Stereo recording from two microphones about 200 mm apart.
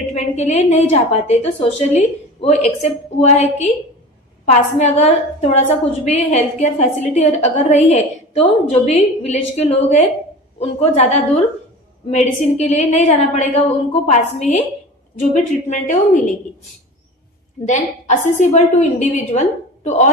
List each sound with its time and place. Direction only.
0.1 s a woman's voice: 35° left (ahead or behind)
17.6 s a woman's voice: 35° left (ahead or behind)